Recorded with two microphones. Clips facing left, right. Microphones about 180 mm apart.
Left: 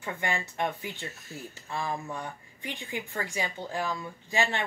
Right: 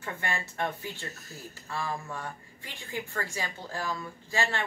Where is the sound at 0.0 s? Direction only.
15° left (ahead or behind).